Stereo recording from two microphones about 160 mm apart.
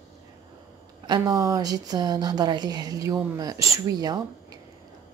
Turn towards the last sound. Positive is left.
turn(degrees=-25)  # may be behind; listen again after turning